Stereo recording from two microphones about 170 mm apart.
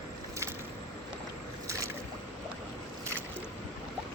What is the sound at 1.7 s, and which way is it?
Boat, 20° right (ahead or behind).